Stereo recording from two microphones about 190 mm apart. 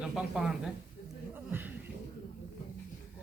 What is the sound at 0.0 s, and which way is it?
Speech, centre (ahead or behind).